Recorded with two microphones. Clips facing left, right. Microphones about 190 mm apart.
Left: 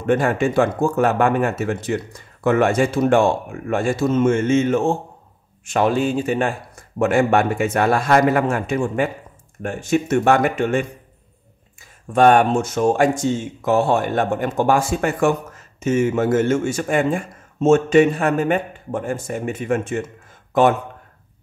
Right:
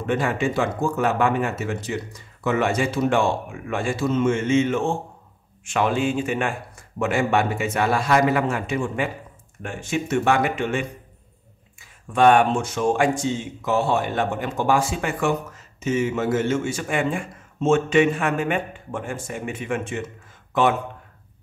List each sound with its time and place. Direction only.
0.0 s speech: 50° left (ahead or behind)
12.1 s speech: 40° left (ahead or behind)